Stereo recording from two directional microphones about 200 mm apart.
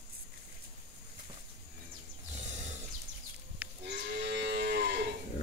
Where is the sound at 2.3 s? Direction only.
35° right (ahead or behind).